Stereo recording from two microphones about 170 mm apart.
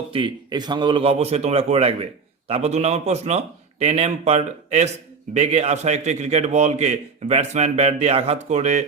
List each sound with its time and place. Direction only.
0.1 s a man's voice: 25° right (ahead or behind); by 8.8 s 45° right (ahead or behind)